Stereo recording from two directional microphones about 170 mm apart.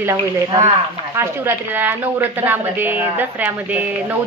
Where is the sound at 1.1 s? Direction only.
15° right (ahead or behind).